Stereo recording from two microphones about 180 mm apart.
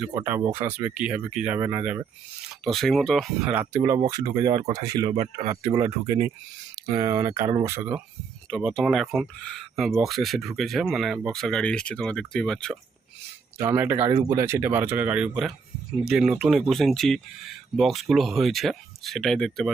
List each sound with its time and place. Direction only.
0.0 s speech: 10° right (ahead or behind)
2.5 s speech: centre (ahead or behind); by 7.8 s 15° right (ahead or behind)
8.4 s speech: 5° left (ahead or behind)
13.6 s speech: 15° right (ahead or behind)